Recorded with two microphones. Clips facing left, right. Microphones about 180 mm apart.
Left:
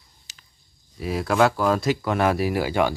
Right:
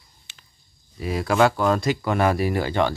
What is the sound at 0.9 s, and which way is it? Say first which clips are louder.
Speech: even; centre (ahead or behind).